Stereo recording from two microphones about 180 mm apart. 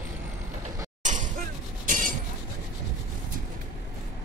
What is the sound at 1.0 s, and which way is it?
Shatter, 45° right (ahead or behind).